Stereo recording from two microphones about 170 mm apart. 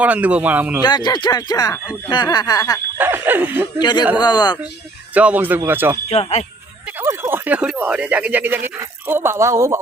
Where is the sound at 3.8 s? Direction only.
25° left (ahead or behind).